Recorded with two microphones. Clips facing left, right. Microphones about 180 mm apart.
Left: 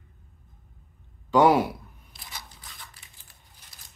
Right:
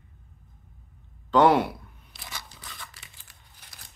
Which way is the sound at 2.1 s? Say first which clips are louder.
Right 2 dB; 75° right (ahead or behind).